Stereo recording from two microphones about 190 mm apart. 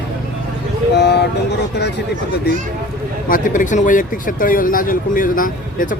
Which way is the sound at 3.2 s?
45° left (ahead or behind).